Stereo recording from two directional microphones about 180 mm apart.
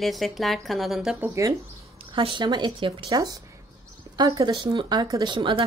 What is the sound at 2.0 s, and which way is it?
Speech, 30° right (ahead or behind).